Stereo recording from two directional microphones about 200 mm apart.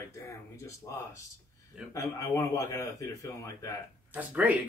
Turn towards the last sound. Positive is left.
turn(degrees=-5)  # may be behind; listen again after turning